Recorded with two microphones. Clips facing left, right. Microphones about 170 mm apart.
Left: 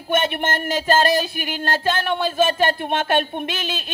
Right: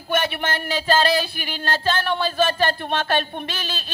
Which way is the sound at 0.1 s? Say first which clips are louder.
Left 2 dB; 50° left (ahead or behind).